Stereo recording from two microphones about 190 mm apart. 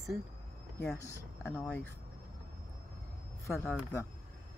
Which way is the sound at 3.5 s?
Centre (ahead or behind).